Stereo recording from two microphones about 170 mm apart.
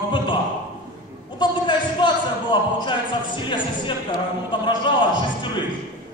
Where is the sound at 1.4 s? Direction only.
25° left (ahead or behind).